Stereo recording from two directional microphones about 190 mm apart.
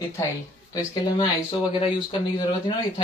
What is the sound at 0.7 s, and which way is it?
Speech, 20° left (ahead or behind).